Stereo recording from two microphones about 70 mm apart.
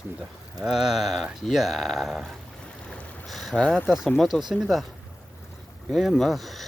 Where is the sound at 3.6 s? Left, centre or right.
Centre.